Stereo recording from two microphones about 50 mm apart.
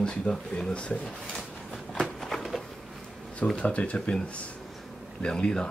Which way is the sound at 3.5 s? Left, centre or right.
Left.